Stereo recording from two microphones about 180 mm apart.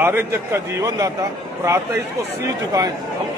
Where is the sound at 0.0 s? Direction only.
15° right (ahead or behind).